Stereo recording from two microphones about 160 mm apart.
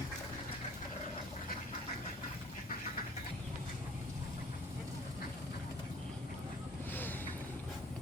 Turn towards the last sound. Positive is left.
turn(degrees=10)  # may be behind; listen again after turning